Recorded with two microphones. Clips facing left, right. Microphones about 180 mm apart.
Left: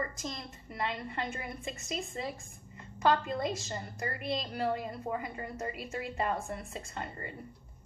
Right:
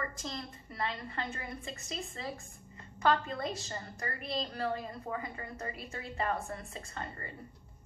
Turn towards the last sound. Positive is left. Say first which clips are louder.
# left 2 dB
turn(degrees=20)  # may be behind; listen again after turning